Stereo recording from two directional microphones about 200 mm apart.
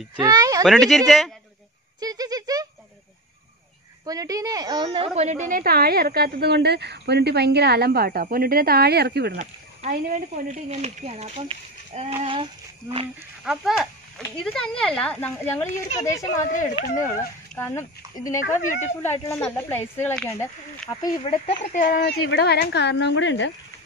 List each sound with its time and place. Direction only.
0.1 s speech: 20° right (ahead or behind)
0.7 s speech: centre (ahead or behind)
2.0 s speech: 20° right (ahead or behind)
4.0 s a woman's voice: 20° right (ahead or behind); by 9.4 s 55° right (ahead or behind)
9.4 s speech: 40° right (ahead or behind)
13.4 s speech: centre (ahead or behind)
18.2 s speech: 40° left (ahead or behind)
19.2 s speech: 10° left (ahead or behind)
21.0 s speech: 25° left (ahead or behind)
21.7 s speech: 40° left (ahead or behind)
22.2 s speech: 60° left (ahead or behind)